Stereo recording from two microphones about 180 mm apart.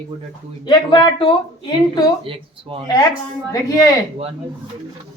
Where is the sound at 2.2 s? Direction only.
30° right (ahead or behind).